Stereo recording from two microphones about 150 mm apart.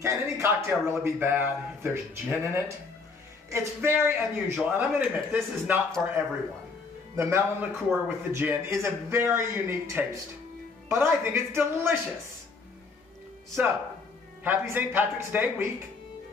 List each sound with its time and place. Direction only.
0.0 s a man's voice: 20° right (ahead or behind)
7.2 s a man's voice: 15° right (ahead or behind)
14.4 s a man's voice: 15° right (ahead or behind)